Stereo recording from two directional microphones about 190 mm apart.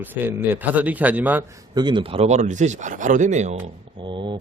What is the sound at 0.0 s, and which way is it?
A man's voice, 10° right (ahead or behind).